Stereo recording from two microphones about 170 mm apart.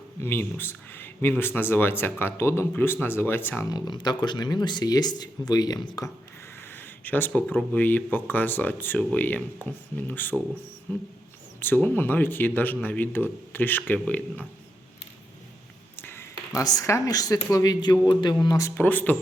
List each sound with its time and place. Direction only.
0.2 s speech: 10° left (ahead or behind)
6.6 s speech: 10° left (ahead or behind)
11.6 s speech: 10° left (ahead or behind)
16.0 s a sound: 15° left (ahead or behind)
16.6 s speech: 20° left (ahead or behind)